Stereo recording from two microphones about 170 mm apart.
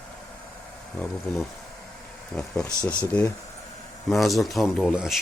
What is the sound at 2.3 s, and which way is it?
Speech, 5° left (ahead or behind).